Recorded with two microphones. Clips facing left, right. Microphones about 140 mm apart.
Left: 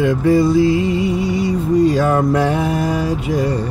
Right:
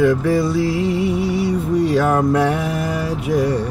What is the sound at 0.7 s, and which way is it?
Music, 65° right (ahead or behind).